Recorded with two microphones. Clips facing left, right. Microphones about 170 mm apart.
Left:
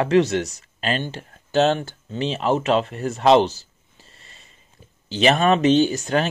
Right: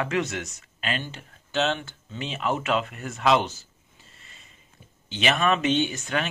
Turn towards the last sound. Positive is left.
turn(degrees=35)  # may be behind; listen again after turning